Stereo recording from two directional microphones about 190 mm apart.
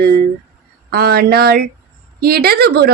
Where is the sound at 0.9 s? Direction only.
55° right (ahead or behind).